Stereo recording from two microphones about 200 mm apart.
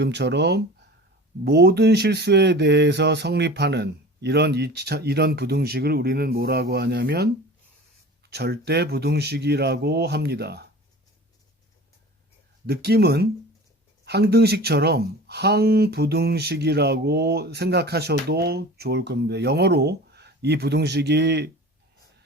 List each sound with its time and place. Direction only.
0.0 s speech: 60° right (ahead or behind)
8.3 s speech: 55° right (ahead or behind)
12.6 s speech: 55° right (ahead or behind)